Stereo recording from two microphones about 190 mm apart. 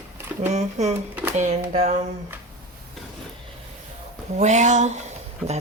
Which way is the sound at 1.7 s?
35° right (ahead or behind).